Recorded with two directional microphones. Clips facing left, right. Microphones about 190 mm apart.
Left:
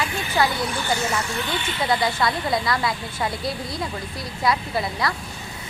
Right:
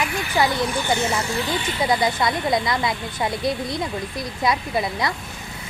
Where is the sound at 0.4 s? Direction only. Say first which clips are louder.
Right 1 dB; 15° right (ahead or behind).